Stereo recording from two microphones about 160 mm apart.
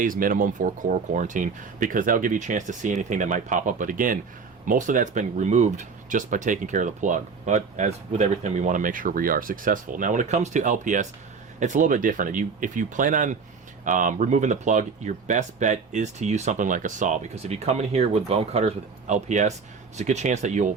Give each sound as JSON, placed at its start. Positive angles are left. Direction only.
{"t": 0.0, "sound": "speech", "side_deg": -60}